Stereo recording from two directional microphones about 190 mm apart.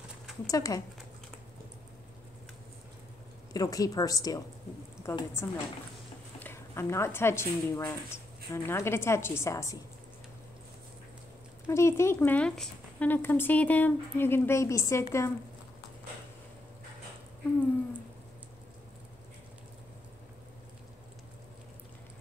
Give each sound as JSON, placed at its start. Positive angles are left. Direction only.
{"t": 0.5, "sound": "speech", "side_deg": 20}
{"t": 3.5, "sound": "a woman's voice", "side_deg": 20}
{"t": 11.6, "sound": "speech", "side_deg": 15}